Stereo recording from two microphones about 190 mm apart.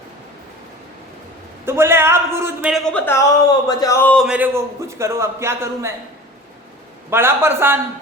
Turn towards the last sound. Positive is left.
turn(degrees=-10)  # may be behind; listen again after turning